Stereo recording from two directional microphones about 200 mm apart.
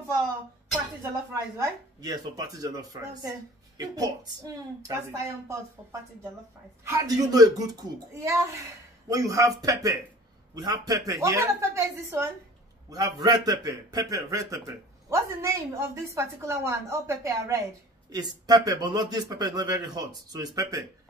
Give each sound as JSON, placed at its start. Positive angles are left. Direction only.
{"t": 1.3, "sound": "a man's voice", "side_deg": -15}